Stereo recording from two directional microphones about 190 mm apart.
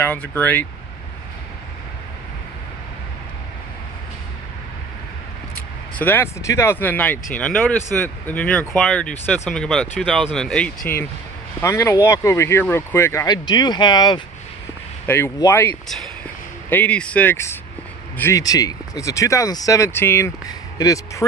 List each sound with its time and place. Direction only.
0.0 s speech: 10° left (ahead or behind)
5.9 s speech: 10° left (ahead or behind)